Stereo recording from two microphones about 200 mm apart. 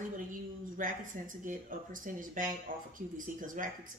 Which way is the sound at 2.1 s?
40° right (ahead or behind).